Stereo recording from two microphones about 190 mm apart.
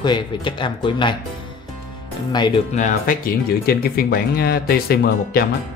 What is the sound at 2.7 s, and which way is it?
Speech, 40° left (ahead or behind).